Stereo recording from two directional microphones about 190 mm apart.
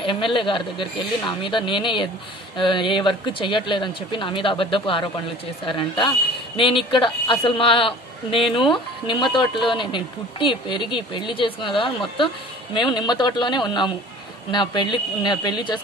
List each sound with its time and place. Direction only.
0.0 s speech: 25° left (ahead or behind)